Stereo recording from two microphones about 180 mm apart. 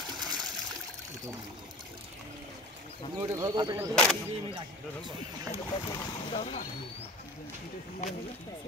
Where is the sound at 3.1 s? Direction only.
15° right (ahead or behind).